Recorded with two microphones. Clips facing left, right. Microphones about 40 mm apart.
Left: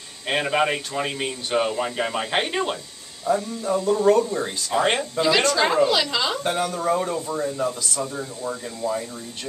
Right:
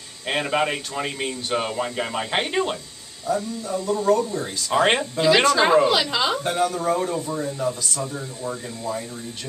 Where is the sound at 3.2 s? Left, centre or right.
Left.